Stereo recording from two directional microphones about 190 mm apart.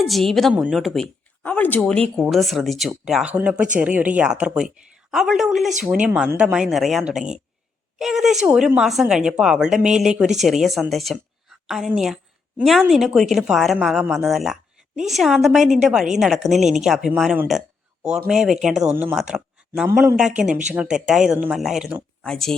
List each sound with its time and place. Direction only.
0.0 s a woman's voice: centre (ahead or behind)